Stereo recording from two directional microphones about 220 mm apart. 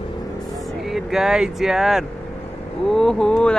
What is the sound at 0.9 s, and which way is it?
Speech, centre (ahead or behind).